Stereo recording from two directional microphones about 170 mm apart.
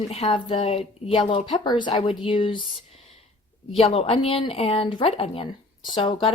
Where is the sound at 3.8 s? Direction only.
35° left (ahead or behind).